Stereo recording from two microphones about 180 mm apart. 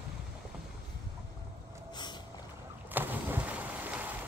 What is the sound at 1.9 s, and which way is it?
Vehicle, 25° left (ahead or behind).